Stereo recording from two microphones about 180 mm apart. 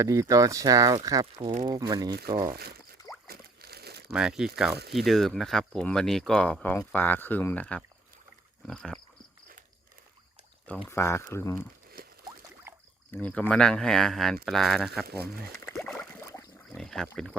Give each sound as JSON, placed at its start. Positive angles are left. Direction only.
{"t": 0.0, "sound": "speech", "side_deg": -15}
{"t": 3.2, "sound": "a sound", "side_deg": -60}
{"t": 4.1, "sound": "speech", "side_deg": -5}
{"t": 10.8, "sound": "speech", "side_deg": 15}
{"t": 12.0, "sound": "a sound", "side_deg": -50}
{"t": 13.1, "sound": "speech", "side_deg": 10}
{"t": 15.0, "sound": "speech", "side_deg": -60}
{"t": 15.8, "sound": "a sound", "side_deg": 15}
{"t": 16.7, "sound": "speech", "side_deg": 5}